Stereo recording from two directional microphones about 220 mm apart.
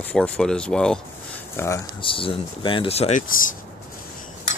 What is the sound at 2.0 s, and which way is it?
Speech, 25° left (ahead or behind).